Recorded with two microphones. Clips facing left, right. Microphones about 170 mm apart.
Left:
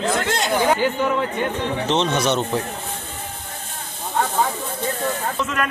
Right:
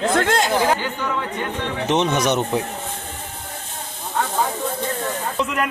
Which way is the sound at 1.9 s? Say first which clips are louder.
Right 2 dB; 15° right (ahead or behind).